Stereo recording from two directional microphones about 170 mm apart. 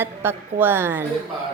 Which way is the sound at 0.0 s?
10° right (ahead or behind).